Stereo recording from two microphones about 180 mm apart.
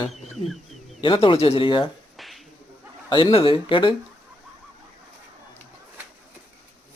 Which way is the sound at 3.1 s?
30° left (ahead or behind).